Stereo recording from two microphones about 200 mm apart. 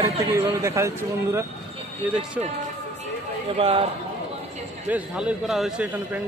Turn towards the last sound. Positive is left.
turn(degrees=-5)  # may be behind; listen again after turning